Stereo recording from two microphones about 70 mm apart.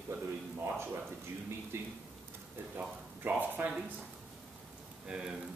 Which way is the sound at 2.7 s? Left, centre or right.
Right.